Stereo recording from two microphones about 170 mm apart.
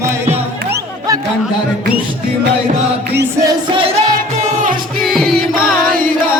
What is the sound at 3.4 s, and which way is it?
Crowd, 30° right (ahead or behind).